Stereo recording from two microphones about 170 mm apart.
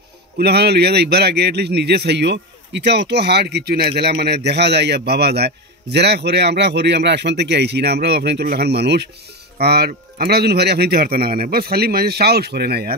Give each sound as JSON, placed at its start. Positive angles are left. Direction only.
{"t": 0.4, "sound": "a man's voice", "side_deg": -70}